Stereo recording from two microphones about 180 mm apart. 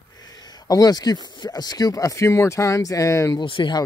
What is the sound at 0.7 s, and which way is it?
Speech, 20° left (ahead or behind).